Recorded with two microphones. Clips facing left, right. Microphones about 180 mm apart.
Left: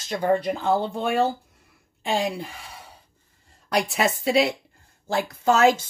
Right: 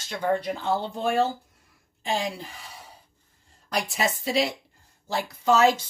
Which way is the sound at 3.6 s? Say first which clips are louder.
Left 4 dB; 65° left (ahead or behind).